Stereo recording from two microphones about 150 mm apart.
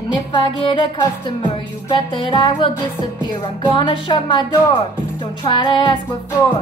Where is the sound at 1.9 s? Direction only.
35° left (ahead or behind).